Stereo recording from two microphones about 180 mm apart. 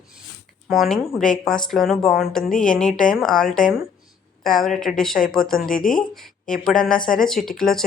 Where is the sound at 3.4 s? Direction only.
50° left (ahead or behind).